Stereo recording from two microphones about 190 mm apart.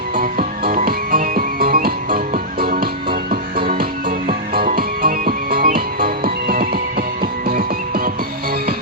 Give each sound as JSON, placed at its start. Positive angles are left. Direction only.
{"t": 0.2, "sound": "music", "side_deg": -50}